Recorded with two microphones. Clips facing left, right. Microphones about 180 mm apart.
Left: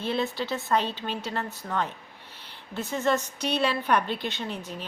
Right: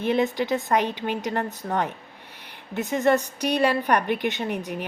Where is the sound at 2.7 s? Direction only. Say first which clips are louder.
Right 5 dB; 15° right (ahead or behind).